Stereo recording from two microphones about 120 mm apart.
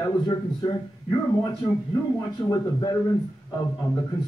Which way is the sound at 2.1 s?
30° left (ahead or behind).